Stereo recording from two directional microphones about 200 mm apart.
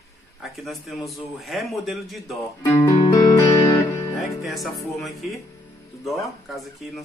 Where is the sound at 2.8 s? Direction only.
15° left (ahead or behind).